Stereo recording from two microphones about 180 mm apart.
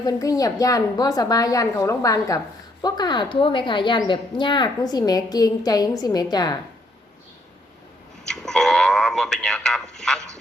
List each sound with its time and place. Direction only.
0.0 s speech: 20° left (ahead or behind)
8.2 s speech: 5° left (ahead or behind)